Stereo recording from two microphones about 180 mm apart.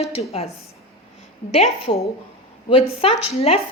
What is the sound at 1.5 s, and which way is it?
A woman's voice, 35° left (ahead or behind).